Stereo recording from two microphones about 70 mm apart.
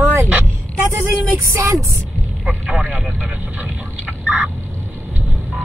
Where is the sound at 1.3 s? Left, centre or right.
Right.